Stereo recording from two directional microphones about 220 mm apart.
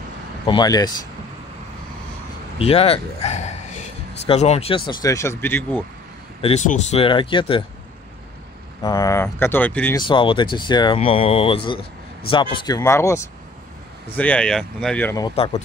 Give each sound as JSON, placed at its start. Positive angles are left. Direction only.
{"t": 0.5, "sound": "speech", "side_deg": 20}
{"t": 2.6, "sound": "speech", "side_deg": 25}
{"t": 6.4, "sound": "speech", "side_deg": 30}
{"t": 8.8, "sound": "speech", "side_deg": 15}
{"t": 9.9, "sound": "speech", "side_deg": 20}